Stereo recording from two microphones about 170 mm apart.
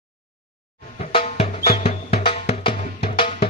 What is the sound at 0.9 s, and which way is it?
Music, 40° left (ahead or behind).